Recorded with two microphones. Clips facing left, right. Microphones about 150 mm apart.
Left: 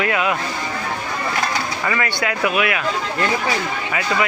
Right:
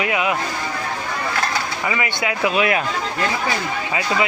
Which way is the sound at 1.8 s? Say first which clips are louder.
Left 1 dB; 10° right (ahead or behind).